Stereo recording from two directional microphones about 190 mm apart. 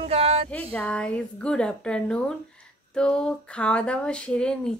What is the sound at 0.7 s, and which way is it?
Speech, 5° left (ahead or behind).